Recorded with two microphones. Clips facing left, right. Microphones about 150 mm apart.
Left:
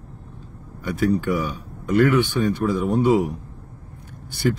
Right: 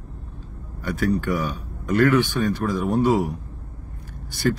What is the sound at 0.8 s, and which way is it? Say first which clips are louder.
Speech: left 2 dB; 15° left (ahead or behind).